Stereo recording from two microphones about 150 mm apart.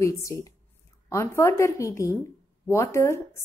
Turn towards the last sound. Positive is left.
turn(degrees=20)  # may be behind; listen again after turning